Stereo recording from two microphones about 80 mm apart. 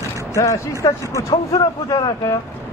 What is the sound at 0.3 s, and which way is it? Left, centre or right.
Speech, left.